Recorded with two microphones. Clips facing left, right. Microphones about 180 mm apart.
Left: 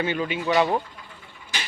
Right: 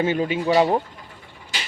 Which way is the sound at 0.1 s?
40° right (ahead or behind).